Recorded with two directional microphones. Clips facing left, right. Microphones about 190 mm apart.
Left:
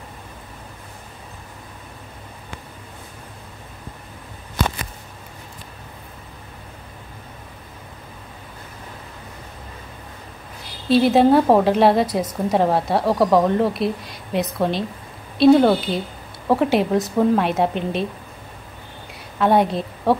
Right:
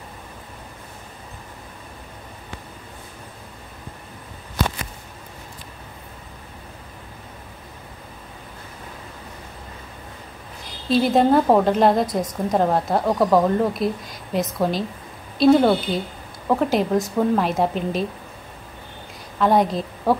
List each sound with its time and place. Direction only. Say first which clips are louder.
10.9 s a woman's voice: left 3 dB; 5° left (ahead or behind)
19.3 s a woman's voice: left 1 dB; centre (ahead or behind)